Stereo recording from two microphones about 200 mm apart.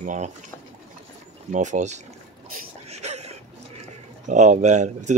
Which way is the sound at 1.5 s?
35° right (ahead or behind).